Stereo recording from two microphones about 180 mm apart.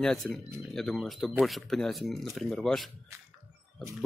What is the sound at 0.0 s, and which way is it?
Speech, 5° left (ahead or behind).